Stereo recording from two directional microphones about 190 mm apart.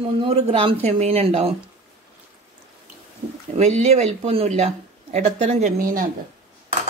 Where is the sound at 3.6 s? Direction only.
35° right (ahead or behind).